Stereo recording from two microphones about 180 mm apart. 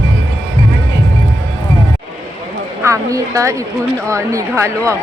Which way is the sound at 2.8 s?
15° right (ahead or behind).